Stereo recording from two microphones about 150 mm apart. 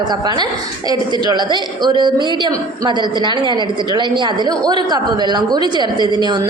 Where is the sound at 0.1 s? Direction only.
30° right (ahead or behind).